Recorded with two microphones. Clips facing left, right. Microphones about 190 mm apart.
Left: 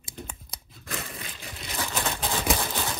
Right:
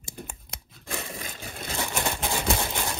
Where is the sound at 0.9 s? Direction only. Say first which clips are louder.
Right 2 dB; 30° right (ahead or behind).